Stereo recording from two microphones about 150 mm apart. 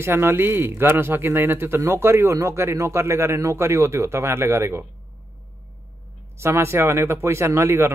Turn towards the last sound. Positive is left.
turn(degrees=-15)  # may be behind; listen again after turning